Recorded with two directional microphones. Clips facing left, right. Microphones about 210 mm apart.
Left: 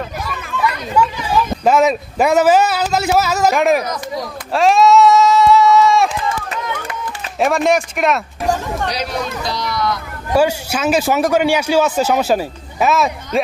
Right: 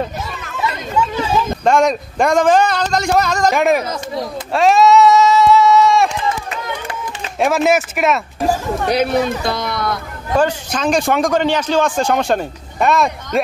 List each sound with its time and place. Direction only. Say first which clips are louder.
0.6 s chatter: left 2 dB; 25° right (ahead or behind)
1.6 s speech: left 1 dB; 5° left (ahead or behind)
3.8 s speech: right 1 dB; 25° right (ahead or behind)
4.5 s a sound: even; centre (ahead or behind)
7.3 s speech: even; centre (ahead or behind)
8.8 s speech: right 7 dB; 55° right (ahead or behind)
10.3 s a man's voice: left 1 dB; 10° left (ahead or behind)